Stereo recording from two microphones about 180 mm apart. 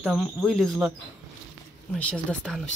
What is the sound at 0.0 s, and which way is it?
Speech, 5° right (ahead or behind).